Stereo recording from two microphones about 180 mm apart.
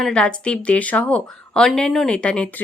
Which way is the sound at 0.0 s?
5° left (ahead or behind).